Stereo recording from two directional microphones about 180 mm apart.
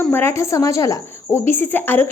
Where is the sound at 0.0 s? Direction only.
15° left (ahead or behind).